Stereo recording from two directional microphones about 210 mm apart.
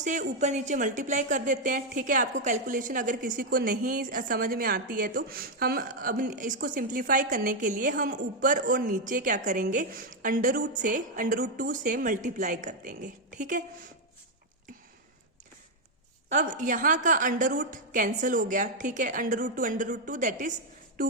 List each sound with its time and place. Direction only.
0.0 s speech: 35° right (ahead or behind)
16.3 s speech: 35° right (ahead or behind)